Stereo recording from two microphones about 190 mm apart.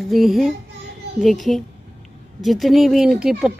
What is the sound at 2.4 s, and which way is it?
Speech, centre (ahead or behind).